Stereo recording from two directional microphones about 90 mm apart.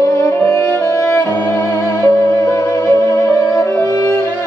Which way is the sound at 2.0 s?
40° left (ahead or behind).